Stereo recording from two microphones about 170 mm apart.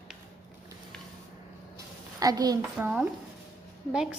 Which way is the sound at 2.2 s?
20° right (ahead or behind).